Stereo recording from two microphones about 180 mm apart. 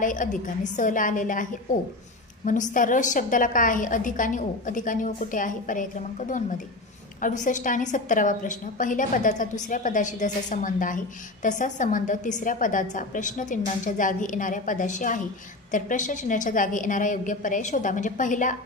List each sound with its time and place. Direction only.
0.0 s a woman's voice: 45° left (ahead or behind)